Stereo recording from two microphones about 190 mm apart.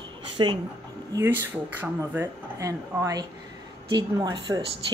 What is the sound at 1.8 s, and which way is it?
Speech, 10° right (ahead or behind).